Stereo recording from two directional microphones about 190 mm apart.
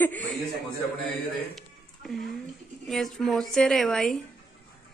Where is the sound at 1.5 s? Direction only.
Centre (ahead or behind).